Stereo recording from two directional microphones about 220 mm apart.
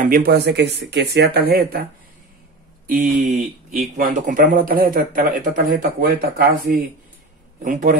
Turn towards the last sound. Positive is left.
turn(degrees=-35)  # may be behind; listen again after turning